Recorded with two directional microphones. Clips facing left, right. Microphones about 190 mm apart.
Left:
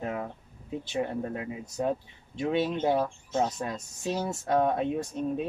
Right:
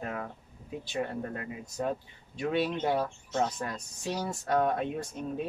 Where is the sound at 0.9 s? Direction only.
20° left (ahead or behind).